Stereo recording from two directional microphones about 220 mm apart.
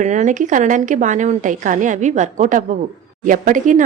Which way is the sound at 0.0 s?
35° right (ahead or behind).